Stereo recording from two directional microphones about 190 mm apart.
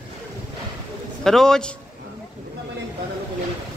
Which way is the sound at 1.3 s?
Centre (ahead or behind).